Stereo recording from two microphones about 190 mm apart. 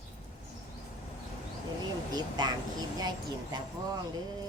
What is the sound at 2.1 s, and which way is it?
Speech, 20° right (ahead or behind).